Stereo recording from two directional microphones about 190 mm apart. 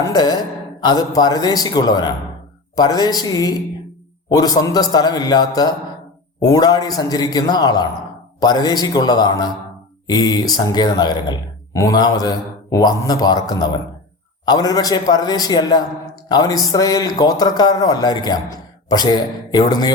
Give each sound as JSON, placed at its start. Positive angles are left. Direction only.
{"t": 0.0, "sound": "speech", "side_deg": 20}